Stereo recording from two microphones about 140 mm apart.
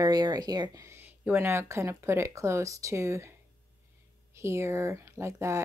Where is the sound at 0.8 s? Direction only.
15° right (ahead or behind).